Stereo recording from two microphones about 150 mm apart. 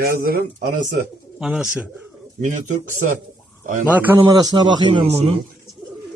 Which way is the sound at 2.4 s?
55° right (ahead or behind).